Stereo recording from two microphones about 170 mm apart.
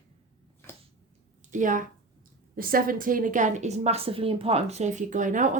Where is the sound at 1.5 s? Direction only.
50° right (ahead or behind).